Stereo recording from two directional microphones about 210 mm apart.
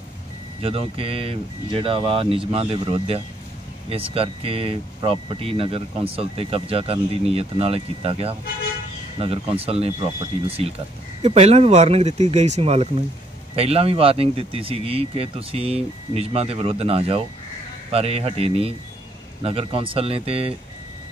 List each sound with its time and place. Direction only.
0.6 s speech: 25° right (ahead or behind)